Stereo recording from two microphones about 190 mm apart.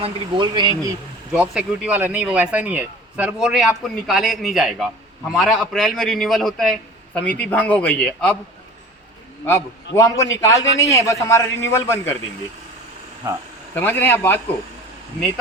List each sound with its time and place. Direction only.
0.0 s speech: 25° right (ahead or behind)
1.3 s speech: 5° right (ahead or behind)
9.5 s a man's voice: 15° left (ahead or behind)
13.7 s a man's voice: 10° left (ahead or behind)